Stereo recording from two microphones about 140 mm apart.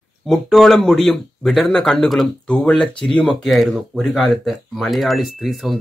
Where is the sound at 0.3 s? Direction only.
Centre (ahead or behind).